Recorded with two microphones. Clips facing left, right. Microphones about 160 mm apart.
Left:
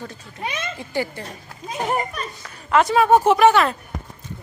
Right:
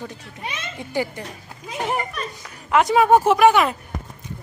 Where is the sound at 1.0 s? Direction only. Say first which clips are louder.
Right 1 dB; 15° right (ahead or behind).